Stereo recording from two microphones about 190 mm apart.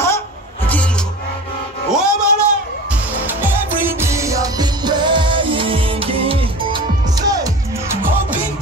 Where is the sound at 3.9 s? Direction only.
15° right (ahead or behind).